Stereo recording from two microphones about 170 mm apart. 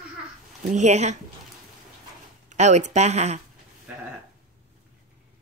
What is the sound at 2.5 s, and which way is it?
Speech, 45° right (ahead or behind).